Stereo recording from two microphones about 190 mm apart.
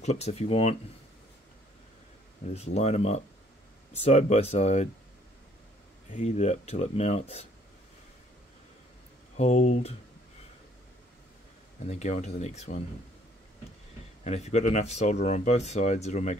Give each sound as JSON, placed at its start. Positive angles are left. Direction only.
{"t": 0.0, "sound": "speech", "side_deg": 35}
{"t": 2.5, "sound": "speech", "side_deg": 35}
{"t": 6.1, "sound": "speech", "side_deg": 35}
{"t": 9.4, "sound": "speech", "side_deg": 35}
{"t": 11.9, "sound": "speech", "side_deg": 35}
{"t": 14.2, "sound": "speech", "side_deg": 35}